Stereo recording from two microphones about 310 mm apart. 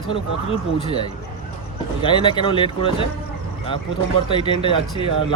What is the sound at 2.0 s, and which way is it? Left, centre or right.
Speech, centre.